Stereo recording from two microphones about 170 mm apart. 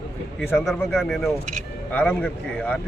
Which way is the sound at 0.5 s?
Centre (ahead or behind).